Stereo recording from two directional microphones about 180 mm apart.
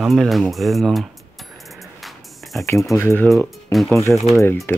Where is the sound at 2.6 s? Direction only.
15° left (ahead or behind); by 4.0 s centre (ahead or behind).